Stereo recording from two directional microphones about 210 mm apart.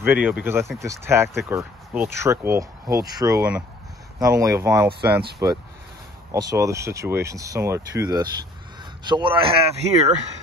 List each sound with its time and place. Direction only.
0.0 s speech: 10° right (ahead or behind); by 10.1 s 25° right (ahead or behind)